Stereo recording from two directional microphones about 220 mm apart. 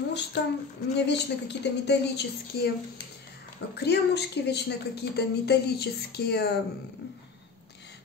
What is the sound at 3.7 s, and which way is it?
Speech, 50° left (ahead or behind).